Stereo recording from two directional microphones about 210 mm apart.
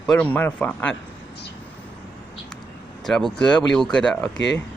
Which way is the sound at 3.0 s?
Centre (ahead or behind).